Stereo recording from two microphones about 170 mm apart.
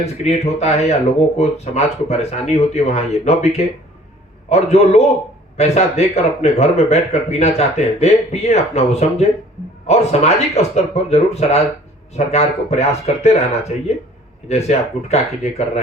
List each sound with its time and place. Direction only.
0.0 s a man's voice: 40° left (ahead or behind)